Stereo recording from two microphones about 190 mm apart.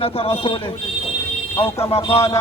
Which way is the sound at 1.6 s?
30° left (ahead or behind).